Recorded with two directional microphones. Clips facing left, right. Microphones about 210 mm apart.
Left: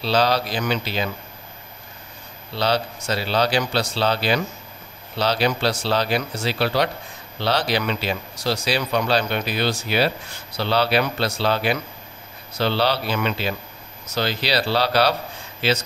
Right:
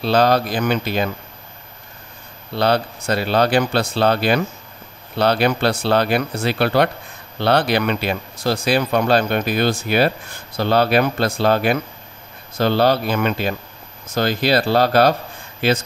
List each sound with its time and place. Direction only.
0.0 s speech: 50° right (ahead or behind)
2.5 s speech: 55° right (ahead or behind)